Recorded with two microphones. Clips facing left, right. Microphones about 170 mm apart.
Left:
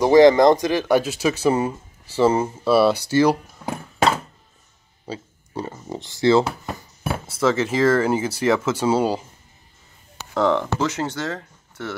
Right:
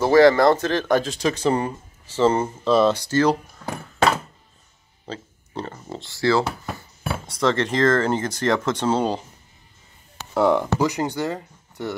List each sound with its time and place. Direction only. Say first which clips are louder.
0.0 s speech: left 2 dB; 15° left (ahead or behind)
5.0 s speech: left 2 dB; 10° left (ahead or behind)
6.4 s speech: left 1 dB; centre (ahead or behind)
10.3 s speech: right 1 dB; 10° right (ahead or behind)